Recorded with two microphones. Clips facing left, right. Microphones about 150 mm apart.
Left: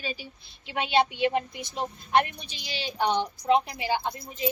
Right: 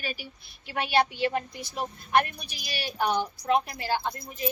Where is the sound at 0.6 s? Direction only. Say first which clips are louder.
Left 1 dB; 20° left (ahead or behind).